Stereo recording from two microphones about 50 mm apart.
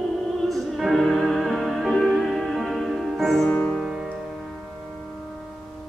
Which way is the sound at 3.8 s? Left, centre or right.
Centre.